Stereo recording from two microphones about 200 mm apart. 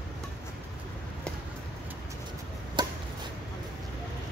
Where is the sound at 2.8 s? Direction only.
20° right (ahead or behind).